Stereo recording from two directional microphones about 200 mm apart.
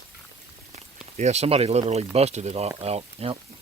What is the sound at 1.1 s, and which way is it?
Speech, 35° right (ahead or behind).